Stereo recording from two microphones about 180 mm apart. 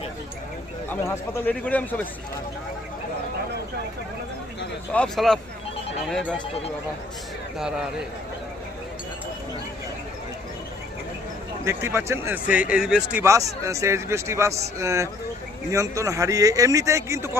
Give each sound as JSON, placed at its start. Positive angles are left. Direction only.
{"t": 0.9, "sound": "a man's voice", "side_deg": 10}
{"t": 4.9, "sound": "speech", "side_deg": 5}
{"t": 11.6, "sound": "speech", "side_deg": -15}